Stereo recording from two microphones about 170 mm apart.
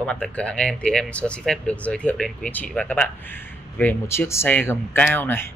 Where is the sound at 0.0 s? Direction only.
5° left (ahead or behind).